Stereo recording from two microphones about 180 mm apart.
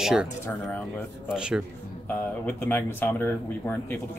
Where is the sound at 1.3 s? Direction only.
5° right (ahead or behind).